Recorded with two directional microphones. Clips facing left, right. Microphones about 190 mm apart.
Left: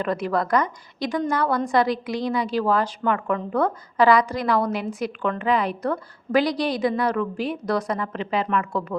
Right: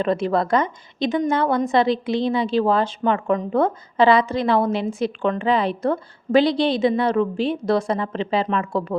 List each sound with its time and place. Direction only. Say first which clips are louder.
0.0 s a woman's voice: right 4 dB; 25° right (ahead or behind)